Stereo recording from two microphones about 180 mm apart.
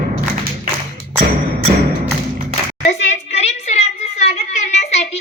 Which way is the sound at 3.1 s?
40° left (ahead or behind).